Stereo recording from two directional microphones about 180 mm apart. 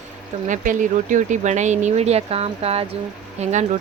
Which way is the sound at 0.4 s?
45° right (ahead or behind).